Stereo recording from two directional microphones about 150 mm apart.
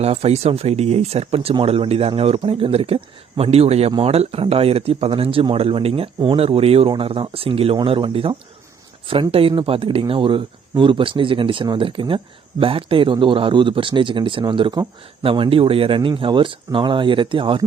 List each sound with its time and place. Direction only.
0.0 s speech: 45° right (ahead or behind)